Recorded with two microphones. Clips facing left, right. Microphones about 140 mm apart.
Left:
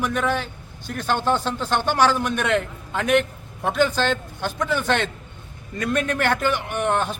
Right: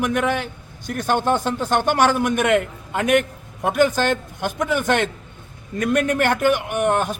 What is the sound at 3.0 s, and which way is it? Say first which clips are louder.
Speech: right 2 dB; 55° right (ahead or behind).